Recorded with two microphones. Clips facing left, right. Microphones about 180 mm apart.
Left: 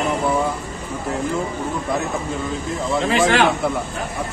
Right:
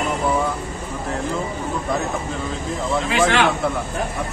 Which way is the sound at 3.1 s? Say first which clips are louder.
Left 2 dB; 40° left (ahead or behind).